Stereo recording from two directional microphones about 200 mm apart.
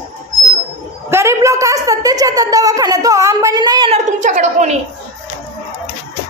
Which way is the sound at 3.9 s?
35° right (ahead or behind).